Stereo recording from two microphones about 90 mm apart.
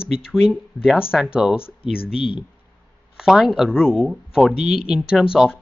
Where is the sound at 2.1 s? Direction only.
80° left.